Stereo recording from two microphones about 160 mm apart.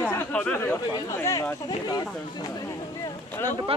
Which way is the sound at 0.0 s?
10° left (ahead or behind).